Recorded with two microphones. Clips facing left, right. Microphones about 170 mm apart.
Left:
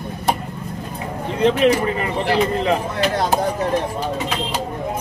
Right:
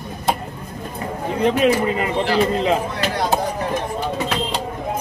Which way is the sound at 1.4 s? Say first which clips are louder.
Left 1 dB; 15° right (ahead or behind).